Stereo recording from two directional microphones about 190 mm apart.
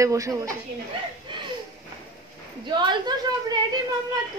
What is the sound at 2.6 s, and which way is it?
Speech, 25° right (ahead or behind).